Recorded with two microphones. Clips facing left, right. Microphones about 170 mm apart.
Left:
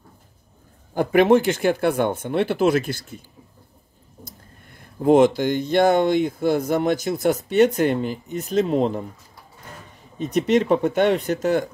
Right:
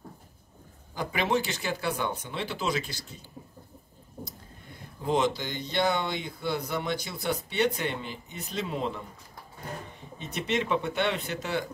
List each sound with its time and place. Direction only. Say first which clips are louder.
0.9 s speech: left 12 dB; 55° left (ahead or behind)
4.7 s speech: left 12 dB; 50° left (ahead or behind)
10.1 s speech: left 11 dB; 40° left (ahead or behind)